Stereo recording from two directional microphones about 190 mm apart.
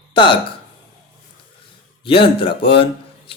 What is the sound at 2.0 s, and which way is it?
A man's voice, 25° left (ahead or behind).